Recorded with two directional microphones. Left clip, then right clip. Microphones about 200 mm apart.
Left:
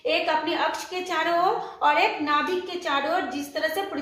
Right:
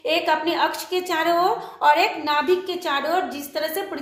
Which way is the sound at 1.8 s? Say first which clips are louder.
Right 4 dB; 40° right (ahead or behind).